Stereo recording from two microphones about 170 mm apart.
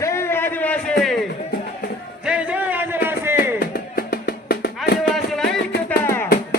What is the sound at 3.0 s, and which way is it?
Music, 15° right (ahead or behind).